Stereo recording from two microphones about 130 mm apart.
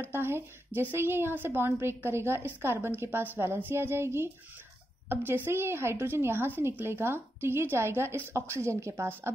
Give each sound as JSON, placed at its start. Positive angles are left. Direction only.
{"t": 0.0, "sound": "a woman's voice", "side_deg": -15}